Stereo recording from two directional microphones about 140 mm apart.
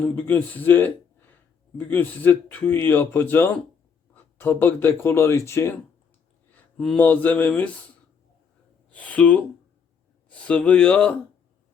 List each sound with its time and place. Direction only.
0.0 s a man's voice: 15° left (ahead or behind)
6.5 s speech: 10° left (ahead or behind)
8.9 s speech: 10° left (ahead or behind)